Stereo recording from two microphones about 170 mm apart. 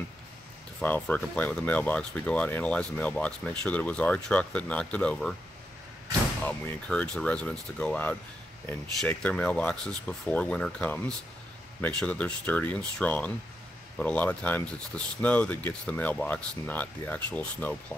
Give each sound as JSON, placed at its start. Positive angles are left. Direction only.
{"t": 0.7, "sound": "speech", "side_deg": 10}
{"t": 6.4, "sound": "speech", "side_deg": 10}